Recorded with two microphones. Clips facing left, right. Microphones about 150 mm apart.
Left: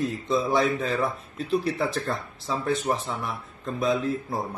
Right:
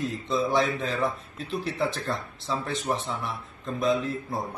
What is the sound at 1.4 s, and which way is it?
Speech, 40° left (ahead or behind).